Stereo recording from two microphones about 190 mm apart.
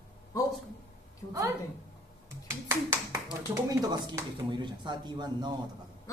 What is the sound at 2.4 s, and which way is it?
Speech, 15° right (ahead or behind).